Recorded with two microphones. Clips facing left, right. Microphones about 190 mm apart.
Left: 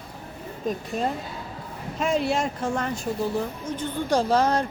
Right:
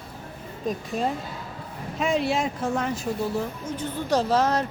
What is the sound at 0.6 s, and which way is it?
Speech, centre (ahead or behind).